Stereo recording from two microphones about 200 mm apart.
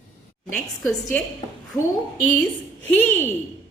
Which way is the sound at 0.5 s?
5° left (ahead or behind).